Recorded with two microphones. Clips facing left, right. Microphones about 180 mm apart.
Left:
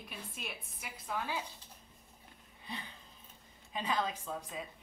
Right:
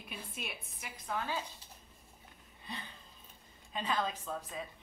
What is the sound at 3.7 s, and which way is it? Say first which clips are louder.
Speech: even; 15° left (ahead or behind).